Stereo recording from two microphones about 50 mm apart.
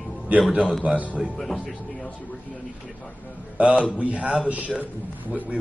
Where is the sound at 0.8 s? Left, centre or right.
Right.